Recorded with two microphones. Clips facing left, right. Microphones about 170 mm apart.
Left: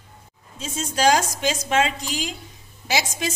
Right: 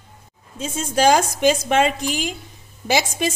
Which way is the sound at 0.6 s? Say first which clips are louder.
Right 3 dB; 55° right (ahead or behind).